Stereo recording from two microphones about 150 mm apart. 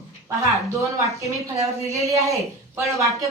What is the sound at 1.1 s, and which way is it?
Speech, 20° right (ahead or behind).